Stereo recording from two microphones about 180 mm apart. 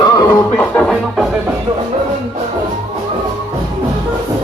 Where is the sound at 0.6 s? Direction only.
5° left (ahead or behind).